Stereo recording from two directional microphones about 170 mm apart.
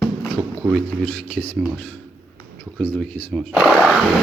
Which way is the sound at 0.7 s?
10° left (ahead or behind).